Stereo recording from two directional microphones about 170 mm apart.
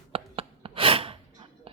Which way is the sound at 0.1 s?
35° right (ahead or behind).